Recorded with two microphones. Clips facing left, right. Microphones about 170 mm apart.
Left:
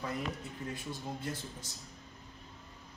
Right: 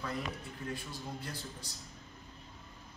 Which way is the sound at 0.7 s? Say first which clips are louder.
Left 2 dB; 20° left (ahead or behind).